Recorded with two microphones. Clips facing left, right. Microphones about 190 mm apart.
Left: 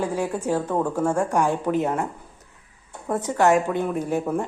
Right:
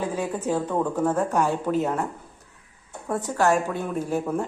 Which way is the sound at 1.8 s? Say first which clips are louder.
Left 1 dB; centre (ahead or behind).